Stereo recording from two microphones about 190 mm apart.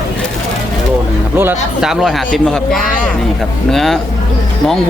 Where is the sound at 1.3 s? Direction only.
10° right (ahead or behind).